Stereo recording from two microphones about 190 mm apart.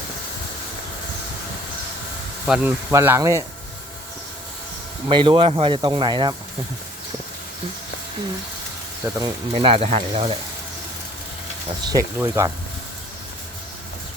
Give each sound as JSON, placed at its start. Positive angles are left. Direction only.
{"t": 2.5, "sound": "speech", "side_deg": -10}
{"t": 5.0, "sound": "speech", "side_deg": -25}
{"t": 9.1, "sound": "speech", "side_deg": -25}
{"t": 11.9, "sound": "speech", "side_deg": -15}